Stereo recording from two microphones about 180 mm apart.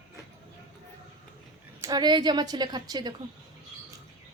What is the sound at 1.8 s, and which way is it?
A woman's voice, 20° right (ahead or behind).